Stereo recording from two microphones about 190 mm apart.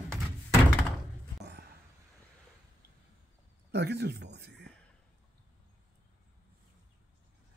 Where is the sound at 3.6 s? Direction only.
60° right (ahead or behind).